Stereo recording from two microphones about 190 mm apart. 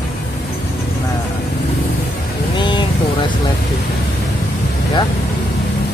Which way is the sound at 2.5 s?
25° left (ahead or behind).